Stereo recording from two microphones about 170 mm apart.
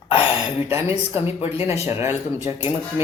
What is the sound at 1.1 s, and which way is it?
Speech, 35° left (ahead or behind).